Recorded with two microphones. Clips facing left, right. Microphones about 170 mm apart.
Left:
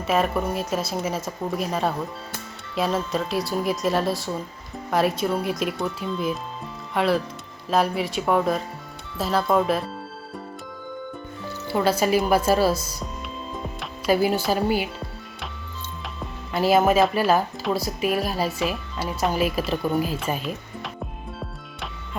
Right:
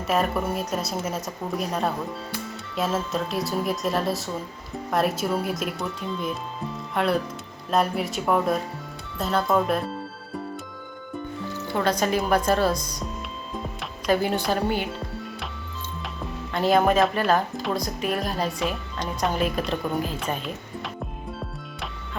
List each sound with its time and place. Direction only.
0.1 s speech: centre (ahead or behind)
11.7 s a woman's voice: 5° left (ahead or behind)
14.1 s speech: 5° left (ahead or behind)
16.5 s speech: 5° left (ahead or behind)